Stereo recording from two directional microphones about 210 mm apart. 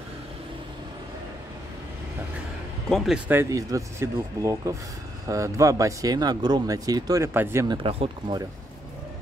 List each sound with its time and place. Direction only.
2.9 s speech: 5° right (ahead or behind)
7.7 s speech: 25° right (ahead or behind)